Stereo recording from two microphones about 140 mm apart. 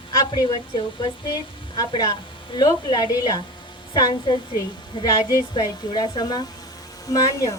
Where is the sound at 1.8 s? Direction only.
30° left (ahead or behind).